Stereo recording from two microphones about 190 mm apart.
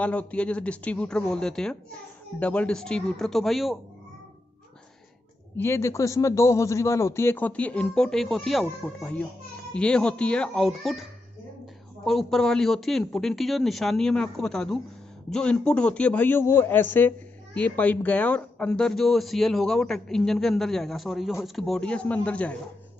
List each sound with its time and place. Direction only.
0.0 s a man's voice: 5° left (ahead or behind)
5.6 s a man's voice: 15° left (ahead or behind)